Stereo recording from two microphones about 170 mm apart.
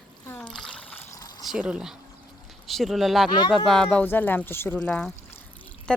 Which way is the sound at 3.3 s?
25° left (ahead or behind).